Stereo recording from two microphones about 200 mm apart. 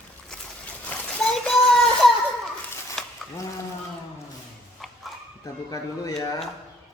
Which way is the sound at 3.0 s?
Centre (ahead or behind).